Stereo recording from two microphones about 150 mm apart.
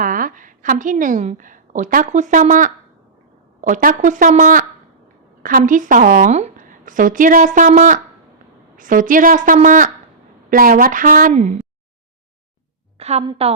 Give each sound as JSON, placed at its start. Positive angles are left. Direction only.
{"t": 0.0, "sound": "a woman's voice", "side_deg": -65}
{"t": 10.5, "sound": "a woman's voice", "side_deg": -75}
{"t": 13.0, "sound": "a woman's voice", "side_deg": -45}